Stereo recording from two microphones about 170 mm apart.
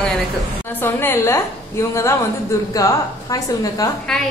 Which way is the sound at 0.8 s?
15° left (ahead or behind).